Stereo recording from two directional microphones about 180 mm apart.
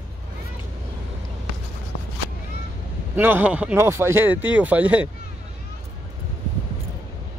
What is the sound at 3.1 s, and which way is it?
Speech, 10° right (ahead or behind).